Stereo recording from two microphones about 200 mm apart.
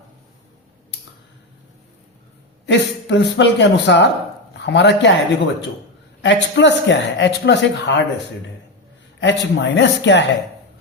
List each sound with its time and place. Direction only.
2.6 s speech: 60° left (ahead or behind)
6.2 s speech: 60° left (ahead or behind)
9.2 s speech: 60° left (ahead or behind)